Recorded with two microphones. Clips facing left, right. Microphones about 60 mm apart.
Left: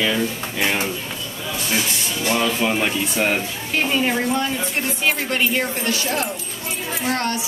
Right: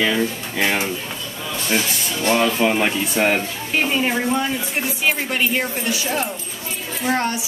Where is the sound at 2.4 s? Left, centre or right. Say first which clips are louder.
Right 2 dB; centre.